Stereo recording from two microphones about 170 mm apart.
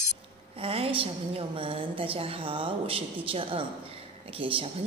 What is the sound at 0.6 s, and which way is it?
A woman's voice, 35° right (ahead or behind).